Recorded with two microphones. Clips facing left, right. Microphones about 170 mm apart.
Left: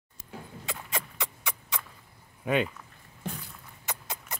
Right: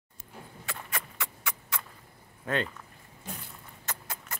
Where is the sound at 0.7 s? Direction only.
20° left (ahead or behind).